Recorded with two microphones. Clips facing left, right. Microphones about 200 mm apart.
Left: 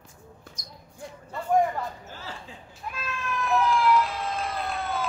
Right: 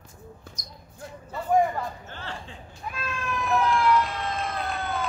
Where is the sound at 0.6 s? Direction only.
40° right (ahead or behind).